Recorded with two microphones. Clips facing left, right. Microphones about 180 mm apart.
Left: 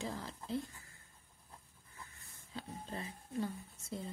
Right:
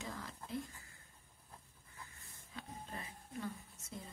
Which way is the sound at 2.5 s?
30° left (ahead or behind).